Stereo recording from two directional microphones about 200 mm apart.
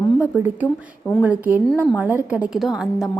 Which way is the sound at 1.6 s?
5° left (ahead or behind).